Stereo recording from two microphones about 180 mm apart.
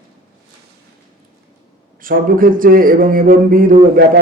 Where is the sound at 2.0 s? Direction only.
50° right (ahead or behind).